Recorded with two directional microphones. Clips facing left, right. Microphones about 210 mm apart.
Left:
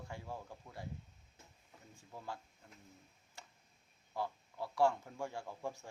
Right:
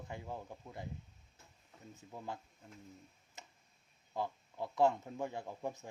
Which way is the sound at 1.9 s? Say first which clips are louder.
Right 2 dB; 20° right (ahead or behind).